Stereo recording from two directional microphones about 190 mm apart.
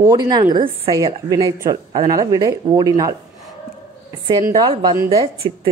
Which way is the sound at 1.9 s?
30° right (ahead or behind).